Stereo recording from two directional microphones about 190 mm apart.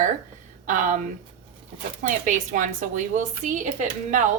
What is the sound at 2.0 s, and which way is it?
A woman's voice, 40° right (ahead or behind).